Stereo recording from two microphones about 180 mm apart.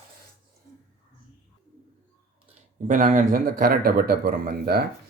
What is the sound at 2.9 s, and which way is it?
A man's voice, 45° right (ahead or behind).